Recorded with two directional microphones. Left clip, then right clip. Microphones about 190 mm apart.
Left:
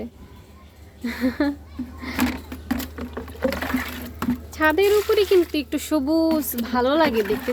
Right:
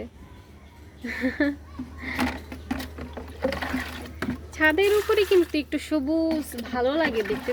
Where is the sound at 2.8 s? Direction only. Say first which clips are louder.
Left 4 dB; 45° left (ahead or behind).